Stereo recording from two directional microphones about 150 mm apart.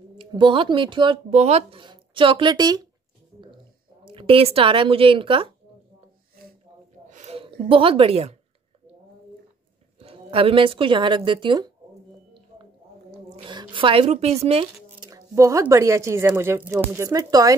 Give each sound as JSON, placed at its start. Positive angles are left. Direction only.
{"t": 0.3, "sound": "speech", "side_deg": -35}
{"t": 4.0, "sound": "speech", "side_deg": -35}
{"t": 7.1, "sound": "a sound", "side_deg": -50}
{"t": 9.9, "sound": "a woman's voice", "side_deg": -40}
{"t": 13.4, "sound": "a woman's voice", "side_deg": -35}
{"t": 15.0, "sound": "a sound", "side_deg": -20}
{"t": 15.7, "sound": "speech", "side_deg": -20}